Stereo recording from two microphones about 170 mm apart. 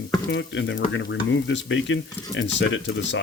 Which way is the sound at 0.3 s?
90° left.